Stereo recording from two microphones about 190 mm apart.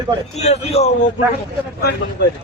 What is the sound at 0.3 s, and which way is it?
Speech, 35° left (ahead or behind).